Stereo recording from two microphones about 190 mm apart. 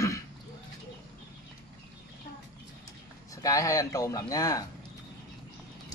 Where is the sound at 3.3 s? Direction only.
15° left (ahead or behind).